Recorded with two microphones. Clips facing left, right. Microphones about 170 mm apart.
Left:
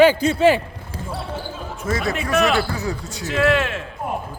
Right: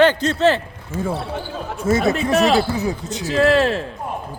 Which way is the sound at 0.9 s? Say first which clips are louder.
Right 10 dB; 35° left (ahead or behind).